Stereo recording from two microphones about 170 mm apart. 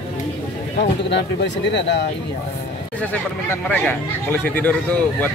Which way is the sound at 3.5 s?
10° left (ahead or behind).